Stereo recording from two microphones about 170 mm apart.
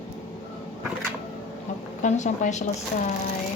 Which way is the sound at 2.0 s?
45° left (ahead or behind).